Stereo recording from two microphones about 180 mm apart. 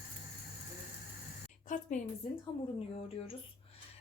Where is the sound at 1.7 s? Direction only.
45° left (ahead or behind).